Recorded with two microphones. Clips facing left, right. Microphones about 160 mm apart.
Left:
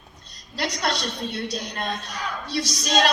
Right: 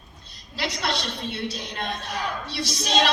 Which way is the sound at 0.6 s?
45° left (ahead or behind).